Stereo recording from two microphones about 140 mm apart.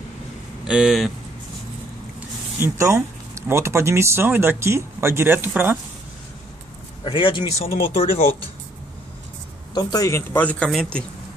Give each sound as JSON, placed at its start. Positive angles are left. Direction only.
{"t": 0.7, "sound": "speech", "side_deg": -5}
{"t": 2.6, "sound": "speech", "side_deg": -20}
{"t": 7.1, "sound": "speech", "side_deg": 35}
{"t": 9.8, "sound": "speech", "side_deg": 30}
{"t": 10.3, "sound": "speech", "side_deg": 10}